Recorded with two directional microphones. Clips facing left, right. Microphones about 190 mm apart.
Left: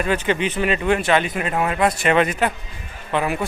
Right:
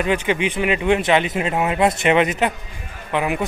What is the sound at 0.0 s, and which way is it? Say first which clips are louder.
Speech: right 1 dB; 15° right (ahead or behind).